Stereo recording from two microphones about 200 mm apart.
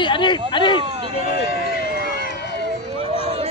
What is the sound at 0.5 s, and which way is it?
Speech, 25° left (ahead or behind).